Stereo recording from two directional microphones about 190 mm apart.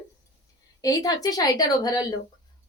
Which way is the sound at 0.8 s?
20° left (ahead or behind).